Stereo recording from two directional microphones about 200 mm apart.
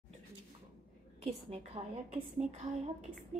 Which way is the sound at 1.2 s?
30° right (ahead or behind).